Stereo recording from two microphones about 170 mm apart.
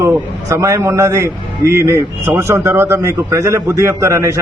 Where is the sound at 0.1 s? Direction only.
15° right (ahead or behind).